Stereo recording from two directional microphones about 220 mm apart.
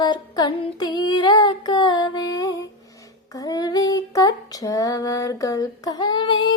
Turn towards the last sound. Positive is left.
turn(degrees=20)  # may be behind; listen again after turning